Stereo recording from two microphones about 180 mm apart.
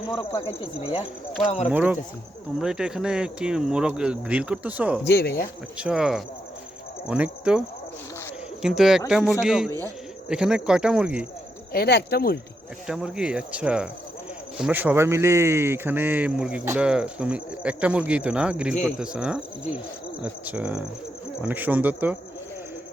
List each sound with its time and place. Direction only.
0.8 s speech: 30° left (ahead or behind)
1.6 s speech: 10° right (ahead or behind)
5.0 s speech: 65° left (ahead or behind)
5.7 s speech: 5° right (ahead or behind)
8.6 s speech: centre (ahead or behind)
11.7 s speech: 60° left (ahead or behind)
12.9 s speech: 5° right (ahead or behind)